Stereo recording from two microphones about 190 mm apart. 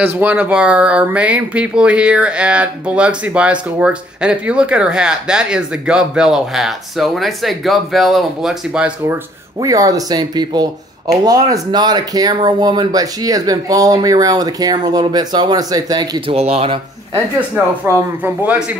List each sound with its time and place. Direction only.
0.2 s speech: 10° right (ahead or behind)
9.6 s speech: 20° right (ahead or behind)
16.3 s speech: 35° right (ahead or behind)
17.8 s speech: 10° right (ahead or behind)